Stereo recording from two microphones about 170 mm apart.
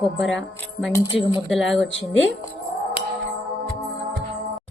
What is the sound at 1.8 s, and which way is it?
Speech, 90° left.